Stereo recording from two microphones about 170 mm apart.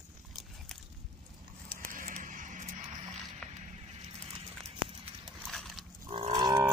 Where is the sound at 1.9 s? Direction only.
50° right (ahead or behind).